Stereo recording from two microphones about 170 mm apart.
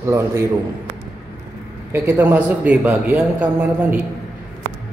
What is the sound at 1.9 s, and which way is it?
A man's voice, 15° right (ahead or behind).